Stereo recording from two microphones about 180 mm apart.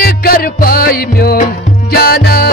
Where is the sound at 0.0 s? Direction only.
55° left (ahead or behind).